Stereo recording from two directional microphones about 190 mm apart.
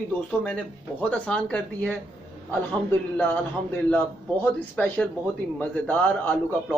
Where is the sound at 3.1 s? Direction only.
10° left (ahead or behind).